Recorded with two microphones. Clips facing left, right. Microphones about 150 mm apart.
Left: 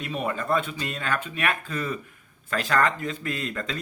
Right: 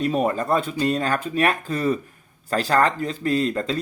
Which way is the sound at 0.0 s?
40° right (ahead or behind).